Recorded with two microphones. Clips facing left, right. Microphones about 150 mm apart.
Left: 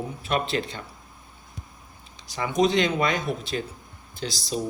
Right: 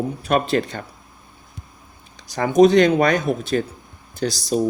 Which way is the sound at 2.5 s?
55° right (ahead or behind).